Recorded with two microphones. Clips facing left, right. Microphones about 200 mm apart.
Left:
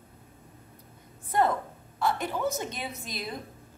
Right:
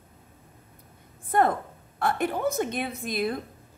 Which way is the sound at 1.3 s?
55° right (ahead or behind).